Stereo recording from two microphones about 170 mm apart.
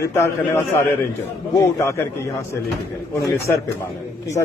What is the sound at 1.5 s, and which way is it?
Speech, 15° left (ahead or behind).